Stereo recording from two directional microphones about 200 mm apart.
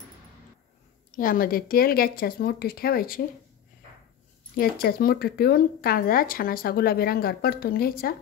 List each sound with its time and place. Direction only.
1.1 s speech: 45° left (ahead or behind)
4.6 s speech: 50° left (ahead or behind)